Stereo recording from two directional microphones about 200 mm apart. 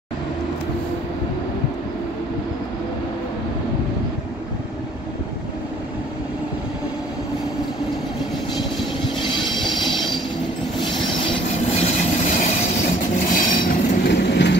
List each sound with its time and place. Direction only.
9.6 s train: centre (ahead or behind)
11.7 s train: 35° left (ahead or behind); by 14.6 s 60° left (ahead or behind)